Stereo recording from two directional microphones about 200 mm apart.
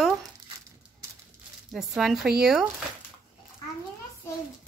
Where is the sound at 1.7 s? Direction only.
Centre (ahead or behind).